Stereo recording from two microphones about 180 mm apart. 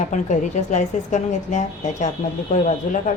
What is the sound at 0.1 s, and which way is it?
A woman's voice, 40° left (ahead or behind).